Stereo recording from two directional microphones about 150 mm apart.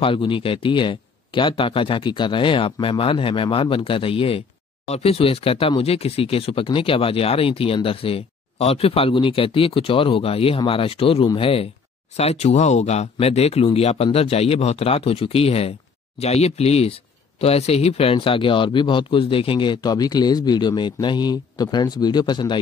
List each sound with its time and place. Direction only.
0.0 s speech: 35° left (ahead or behind)